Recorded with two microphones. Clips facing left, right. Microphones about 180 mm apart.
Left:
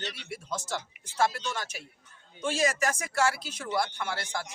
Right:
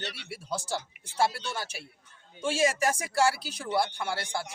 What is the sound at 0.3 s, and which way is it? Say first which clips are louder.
Speech: right 2 dB; 35° right (ahead or behind).